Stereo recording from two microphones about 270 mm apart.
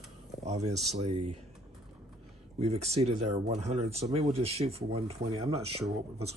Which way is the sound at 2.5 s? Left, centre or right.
Right.